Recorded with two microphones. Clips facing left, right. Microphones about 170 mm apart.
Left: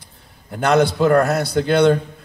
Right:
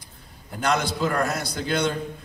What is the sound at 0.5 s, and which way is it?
A man's voice, 60° left (ahead or behind).